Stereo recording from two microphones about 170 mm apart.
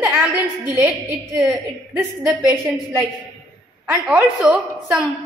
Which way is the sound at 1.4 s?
15° right (ahead or behind).